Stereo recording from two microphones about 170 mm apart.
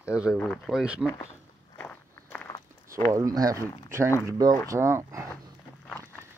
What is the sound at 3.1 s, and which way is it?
Speech, 20° right (ahead or behind).